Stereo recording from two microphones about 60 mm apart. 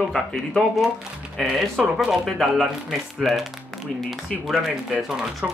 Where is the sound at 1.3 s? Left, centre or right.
Centre.